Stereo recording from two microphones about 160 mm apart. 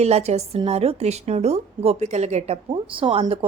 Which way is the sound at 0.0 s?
40° right (ahead or behind).